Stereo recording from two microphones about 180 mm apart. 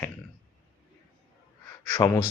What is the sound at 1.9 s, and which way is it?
Speech, 20° left (ahead or behind).